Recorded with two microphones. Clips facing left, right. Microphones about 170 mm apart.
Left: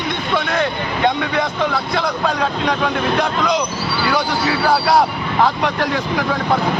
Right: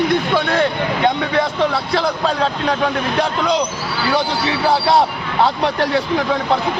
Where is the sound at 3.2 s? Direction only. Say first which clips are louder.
Right 1 dB; 30° right (ahead or behind).